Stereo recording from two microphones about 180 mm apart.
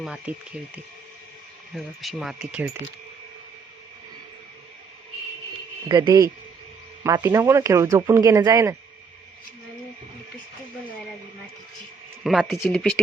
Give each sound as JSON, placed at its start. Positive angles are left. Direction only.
{"t": 0.0, "sound": "speech", "side_deg": -5}
{"t": 1.7, "sound": "speech", "side_deg": 0}
{"t": 5.9, "sound": "speech", "side_deg": -25}
{"t": 12.2, "sound": "speech", "side_deg": 0}